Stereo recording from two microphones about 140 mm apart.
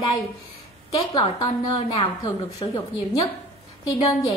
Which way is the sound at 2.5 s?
30° left (ahead or behind).